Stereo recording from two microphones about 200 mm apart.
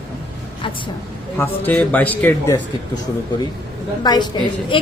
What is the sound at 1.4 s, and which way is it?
A woman's voice, 10° left (ahead or behind).